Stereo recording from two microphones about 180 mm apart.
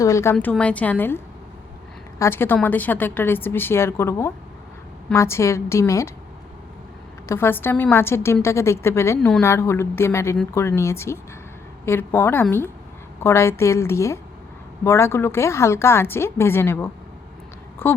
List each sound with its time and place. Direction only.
0.0 s a woman's voice: 15° left (ahead or behind)
0.3 s a woman's voice: 5° left (ahead or behind)
7.3 s a woman's voice: 10° left (ahead or behind)